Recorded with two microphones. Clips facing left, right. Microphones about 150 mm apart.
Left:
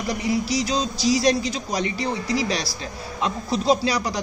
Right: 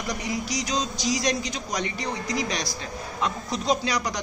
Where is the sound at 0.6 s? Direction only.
30° left (ahead or behind).